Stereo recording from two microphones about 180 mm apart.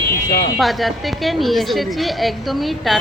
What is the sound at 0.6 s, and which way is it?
A woman's voice, centre (ahead or behind).